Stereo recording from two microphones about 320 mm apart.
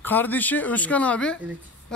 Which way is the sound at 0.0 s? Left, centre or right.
Centre.